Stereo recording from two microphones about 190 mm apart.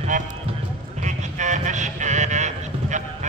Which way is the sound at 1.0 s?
40° right (ahead or behind).